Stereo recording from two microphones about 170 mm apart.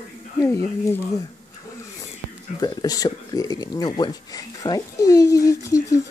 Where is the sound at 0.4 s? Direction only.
20° left (ahead or behind).